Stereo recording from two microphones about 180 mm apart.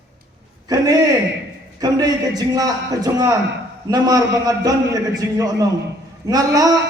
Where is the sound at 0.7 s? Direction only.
20° right (ahead or behind).